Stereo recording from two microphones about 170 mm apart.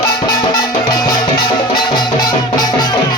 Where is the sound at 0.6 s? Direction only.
20° left (ahead or behind).